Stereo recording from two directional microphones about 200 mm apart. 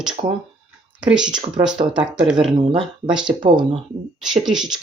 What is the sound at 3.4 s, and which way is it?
Speech, 25° right (ahead or behind).